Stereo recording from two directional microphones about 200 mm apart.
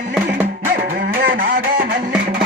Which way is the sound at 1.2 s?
45° right (ahead or behind).